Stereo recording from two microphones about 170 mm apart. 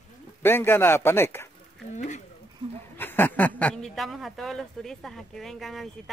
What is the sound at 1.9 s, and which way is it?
Speech, 45° left (ahead or behind).